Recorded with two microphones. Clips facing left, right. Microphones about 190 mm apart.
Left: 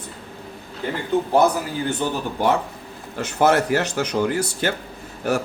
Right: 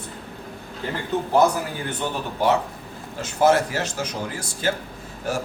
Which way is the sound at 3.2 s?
60° left (ahead or behind).